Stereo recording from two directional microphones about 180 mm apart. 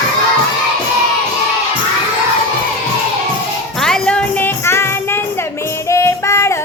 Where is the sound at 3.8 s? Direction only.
5° left (ahead or behind).